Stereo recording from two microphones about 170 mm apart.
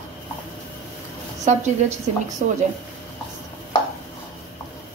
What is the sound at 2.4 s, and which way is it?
Speech, 50° right (ahead or behind).